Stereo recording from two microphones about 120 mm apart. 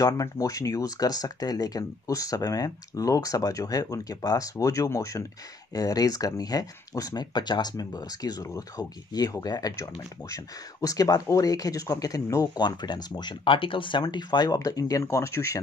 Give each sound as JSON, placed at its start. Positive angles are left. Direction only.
{"t": 0.0, "sound": "speech", "side_deg": 30}